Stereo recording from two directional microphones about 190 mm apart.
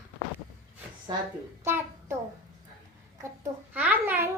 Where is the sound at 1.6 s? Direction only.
10° right (ahead or behind).